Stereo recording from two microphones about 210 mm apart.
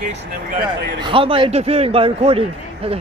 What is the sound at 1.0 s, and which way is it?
Speech, 25° right (ahead or behind).